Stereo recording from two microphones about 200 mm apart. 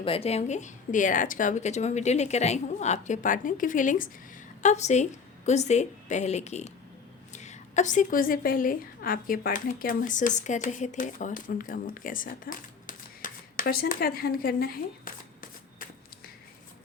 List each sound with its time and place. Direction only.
0.0 s a woman's voice: 30° left (ahead or behind); by 15.4 s 45° left (ahead or behind)